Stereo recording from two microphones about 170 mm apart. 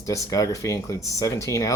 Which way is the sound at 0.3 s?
20° left (ahead or behind).